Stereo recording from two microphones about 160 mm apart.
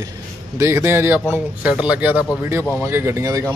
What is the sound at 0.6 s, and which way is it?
A man's voice, 15° right (ahead or behind).